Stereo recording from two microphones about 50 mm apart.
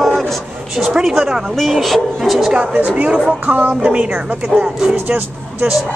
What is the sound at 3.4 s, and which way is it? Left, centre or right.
Music, right.